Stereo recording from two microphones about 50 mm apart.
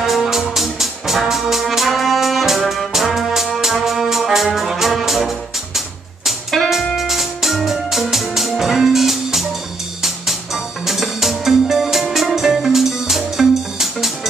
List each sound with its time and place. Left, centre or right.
0.0 s music: centre